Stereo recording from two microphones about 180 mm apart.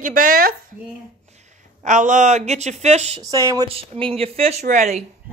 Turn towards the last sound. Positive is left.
turn(degrees=-40)  # may be behind; listen again after turning